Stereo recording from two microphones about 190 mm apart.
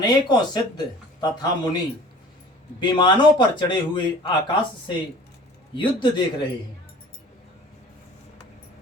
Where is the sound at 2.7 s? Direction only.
25° left (ahead or behind).